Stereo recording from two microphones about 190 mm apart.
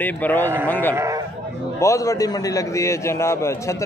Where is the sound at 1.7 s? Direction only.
15° left (ahead or behind).